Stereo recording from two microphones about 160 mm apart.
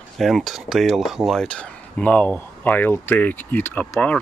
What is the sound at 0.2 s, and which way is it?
Speech, centre (ahead or behind).